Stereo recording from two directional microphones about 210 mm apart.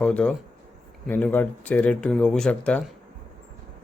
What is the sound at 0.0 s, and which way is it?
Speech, 5° left (ahead or behind).